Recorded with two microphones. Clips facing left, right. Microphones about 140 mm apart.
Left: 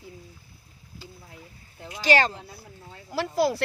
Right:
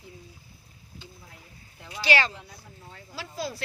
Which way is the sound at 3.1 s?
70° left (ahead or behind).